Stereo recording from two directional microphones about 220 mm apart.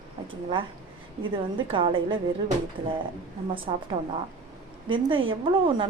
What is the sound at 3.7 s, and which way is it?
Speech, 20° right (ahead or behind).